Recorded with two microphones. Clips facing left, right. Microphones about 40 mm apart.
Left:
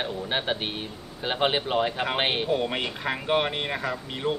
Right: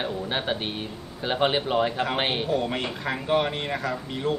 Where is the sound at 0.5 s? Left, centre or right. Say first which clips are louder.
Right 1 dB; centre.